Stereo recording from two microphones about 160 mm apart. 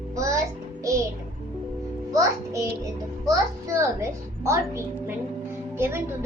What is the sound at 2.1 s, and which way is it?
A child's voice, 20° right (ahead or behind).